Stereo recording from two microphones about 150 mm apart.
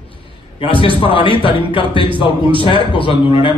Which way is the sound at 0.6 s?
35° left (ahead or behind).